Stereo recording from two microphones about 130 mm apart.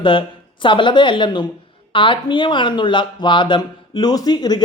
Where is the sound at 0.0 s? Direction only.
40° left (ahead or behind).